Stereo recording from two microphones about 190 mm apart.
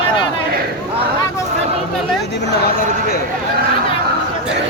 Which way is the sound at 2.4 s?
55° left (ahead or behind).